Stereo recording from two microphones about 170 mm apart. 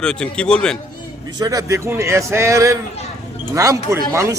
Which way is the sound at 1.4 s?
20° right (ahead or behind).